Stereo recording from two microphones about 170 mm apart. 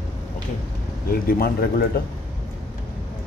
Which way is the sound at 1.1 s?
60° left (ahead or behind).